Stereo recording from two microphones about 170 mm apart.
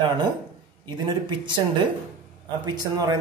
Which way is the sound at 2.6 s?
20° right (ahead or behind).